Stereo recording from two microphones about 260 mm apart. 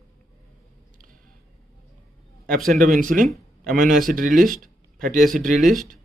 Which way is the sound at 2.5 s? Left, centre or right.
Centre.